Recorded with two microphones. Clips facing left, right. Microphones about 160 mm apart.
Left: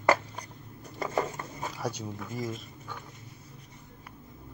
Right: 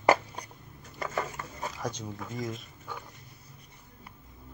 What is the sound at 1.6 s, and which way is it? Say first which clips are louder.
Speech: left 1 dB; 10° left (ahead or behind).